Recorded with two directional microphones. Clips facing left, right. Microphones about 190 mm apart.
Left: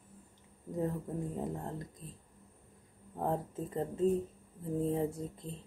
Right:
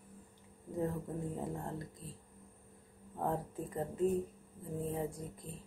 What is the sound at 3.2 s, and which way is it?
Speech, 25° left (ahead or behind).